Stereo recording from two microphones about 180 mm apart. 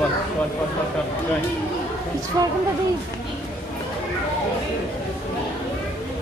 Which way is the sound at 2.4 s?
20° right (ahead or behind).